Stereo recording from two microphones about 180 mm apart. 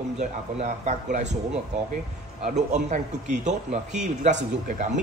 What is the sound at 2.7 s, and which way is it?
A man's voice, 40° right (ahead or behind).